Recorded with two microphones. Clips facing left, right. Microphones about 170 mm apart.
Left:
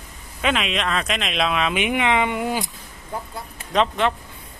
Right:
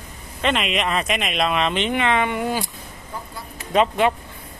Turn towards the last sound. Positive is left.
turn(degrees=-10)  # may be behind; listen again after turning